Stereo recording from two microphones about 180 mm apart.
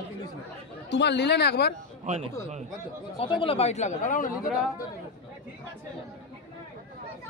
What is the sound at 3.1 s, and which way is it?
Speech, 30° left (ahead or behind).